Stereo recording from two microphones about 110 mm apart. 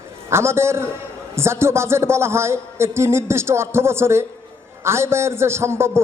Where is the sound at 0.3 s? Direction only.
25° right (ahead or behind).